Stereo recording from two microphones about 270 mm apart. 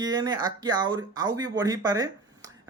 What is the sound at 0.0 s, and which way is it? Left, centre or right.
Speech, centre.